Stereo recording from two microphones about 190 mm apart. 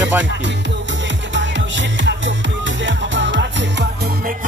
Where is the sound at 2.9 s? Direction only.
75° right (ahead or behind).